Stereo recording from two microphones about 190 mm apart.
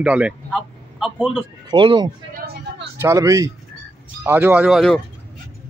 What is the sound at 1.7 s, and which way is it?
Speech, 25° right (ahead or behind).